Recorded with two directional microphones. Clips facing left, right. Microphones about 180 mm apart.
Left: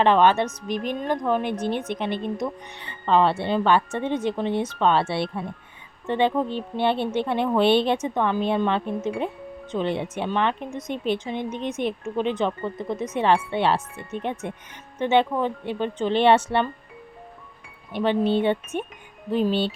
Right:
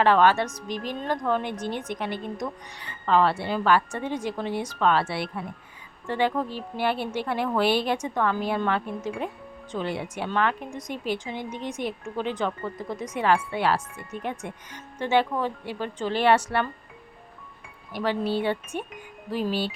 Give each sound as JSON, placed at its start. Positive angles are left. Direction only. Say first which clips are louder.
{"t": 0.0, "sound": "speech", "louder": "left 2 dB", "side_deg": 20}
{"t": 17.9, "sound": "speech", "louder": "left 5 dB", "side_deg": 25}